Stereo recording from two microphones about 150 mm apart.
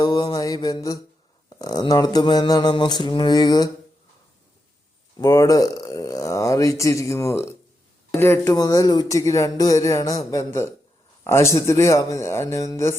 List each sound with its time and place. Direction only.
0.0 s mantra: 30° left (ahead or behind)
1.5 s speech: 25° left (ahead or behind)
5.1 s speech: 25° left (ahead or behind)